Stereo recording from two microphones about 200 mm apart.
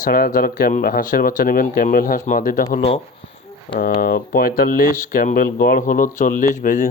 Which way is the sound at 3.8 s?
45° left (ahead or behind).